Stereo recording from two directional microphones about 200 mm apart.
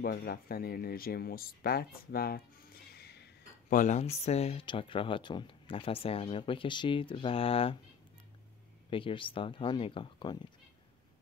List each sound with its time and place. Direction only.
0.0 s speech: 50° left (ahead or behind)
3.7 s speech: 40° left (ahead or behind)
8.9 s speech: 25° left (ahead or behind)